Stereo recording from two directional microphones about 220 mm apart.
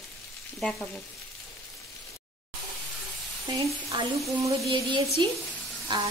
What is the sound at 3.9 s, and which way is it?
Sizzle, 20° right (ahead or behind).